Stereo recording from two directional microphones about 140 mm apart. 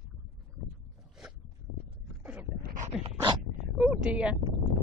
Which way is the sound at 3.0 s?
40° right (ahead or behind).